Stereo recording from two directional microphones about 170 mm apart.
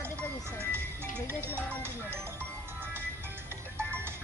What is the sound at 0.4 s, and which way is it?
Music, 15° right (ahead or behind).